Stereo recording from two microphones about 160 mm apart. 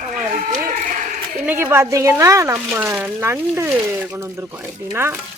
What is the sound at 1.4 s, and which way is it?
Speech, 15° right (ahead or behind).